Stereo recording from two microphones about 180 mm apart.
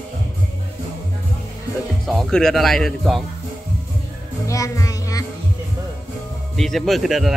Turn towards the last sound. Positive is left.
turn(degrees=0)  # may be behind; listen again after turning